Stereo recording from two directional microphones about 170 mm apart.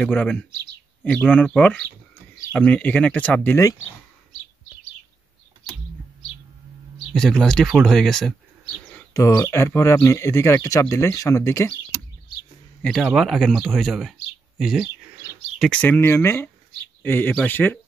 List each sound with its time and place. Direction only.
0.0 s speech: 10° left (ahead or behind)
7.1 s speech: centre (ahead or behind)
9.1 s speech: 15° left (ahead or behind)
12.8 s speech: centre (ahead or behind)